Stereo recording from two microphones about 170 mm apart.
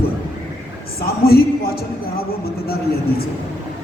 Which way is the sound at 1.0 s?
65° left (ahead or behind).